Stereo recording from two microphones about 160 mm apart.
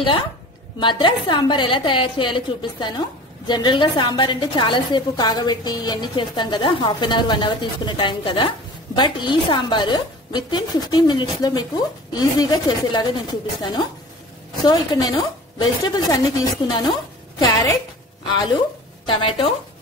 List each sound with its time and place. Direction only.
0.7 s a woman's voice: 30° left (ahead or behind)
19.0 s a woman's voice: 35° left (ahead or behind)